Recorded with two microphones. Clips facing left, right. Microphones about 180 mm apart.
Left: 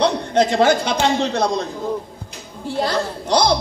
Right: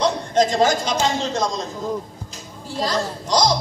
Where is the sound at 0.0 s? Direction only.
60° left (ahead or behind).